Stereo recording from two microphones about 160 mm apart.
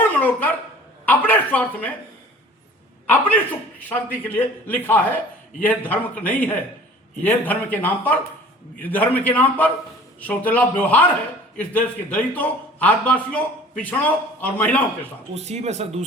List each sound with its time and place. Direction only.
0.2 s a sound: 10° left (ahead or behind)
3.1 s a man's voice: 10° left (ahead or behind)
15.4 s speech: 45° right (ahead or behind)